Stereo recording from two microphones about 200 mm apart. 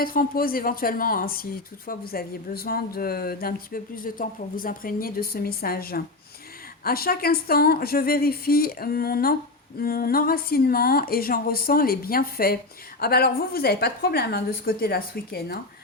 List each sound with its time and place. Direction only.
0.0 s speech: 45° left (ahead or behind)